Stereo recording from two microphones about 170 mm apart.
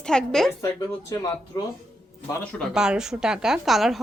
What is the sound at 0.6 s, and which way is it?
Speech, 20° left (ahead or behind).